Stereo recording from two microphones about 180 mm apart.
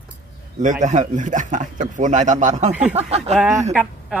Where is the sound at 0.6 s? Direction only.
45° right (ahead or behind).